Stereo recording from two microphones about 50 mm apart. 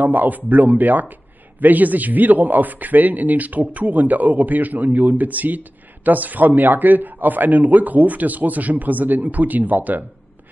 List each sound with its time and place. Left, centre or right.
0.0 s a man's voice: right